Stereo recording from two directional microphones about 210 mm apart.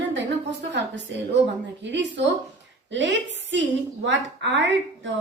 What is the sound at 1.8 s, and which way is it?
A woman's voice, 60° right (ahead or behind).